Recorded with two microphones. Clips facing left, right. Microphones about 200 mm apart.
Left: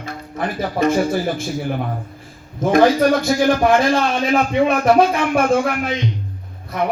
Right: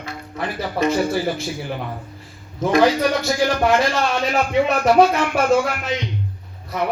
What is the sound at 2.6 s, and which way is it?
Music, 50° left (ahead or behind).